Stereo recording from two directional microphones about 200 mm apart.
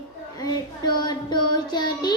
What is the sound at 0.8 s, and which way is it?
Child singing, 20° left (ahead or behind).